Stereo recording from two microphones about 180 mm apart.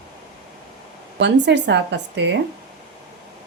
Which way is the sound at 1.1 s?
75° right (ahead or behind).